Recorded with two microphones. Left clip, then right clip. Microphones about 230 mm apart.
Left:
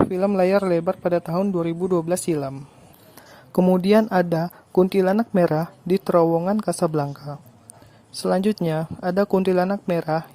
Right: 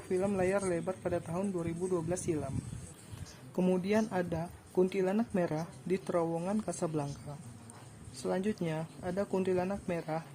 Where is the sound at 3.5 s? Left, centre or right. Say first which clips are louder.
Left 14 dB; left.